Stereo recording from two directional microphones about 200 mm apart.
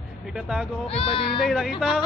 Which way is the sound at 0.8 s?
30° left (ahead or behind).